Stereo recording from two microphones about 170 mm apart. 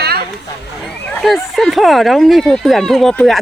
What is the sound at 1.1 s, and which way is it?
Speech, centre (ahead or behind).